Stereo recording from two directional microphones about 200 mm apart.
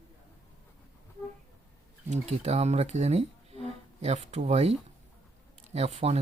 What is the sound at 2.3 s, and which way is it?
Speech, 30° right (ahead or behind).